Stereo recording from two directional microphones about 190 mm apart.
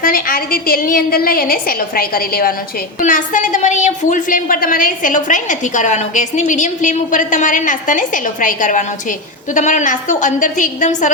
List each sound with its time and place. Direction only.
0.0 s a woman's voice: 50° left (ahead or behind)